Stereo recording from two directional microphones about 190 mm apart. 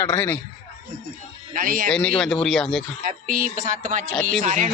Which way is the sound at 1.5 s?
45° right (ahead or behind).